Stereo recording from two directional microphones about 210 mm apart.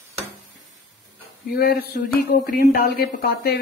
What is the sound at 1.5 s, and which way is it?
A woman's voice, 45° left (ahead or behind).